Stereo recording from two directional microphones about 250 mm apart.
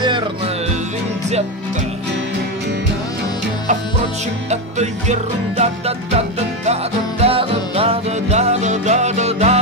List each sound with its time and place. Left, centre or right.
4.5 s music: right